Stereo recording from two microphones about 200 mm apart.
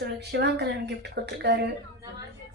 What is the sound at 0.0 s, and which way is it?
A woman's voice, 55° right (ahead or behind).